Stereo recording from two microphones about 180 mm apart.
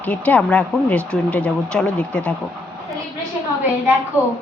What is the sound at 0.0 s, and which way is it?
Speech, 10° left (ahead or behind).